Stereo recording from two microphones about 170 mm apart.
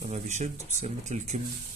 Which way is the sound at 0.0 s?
40° right (ahead or behind).